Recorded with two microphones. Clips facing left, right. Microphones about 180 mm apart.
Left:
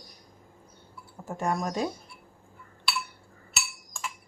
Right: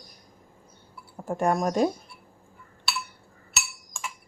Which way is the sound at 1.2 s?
50° right (ahead or behind).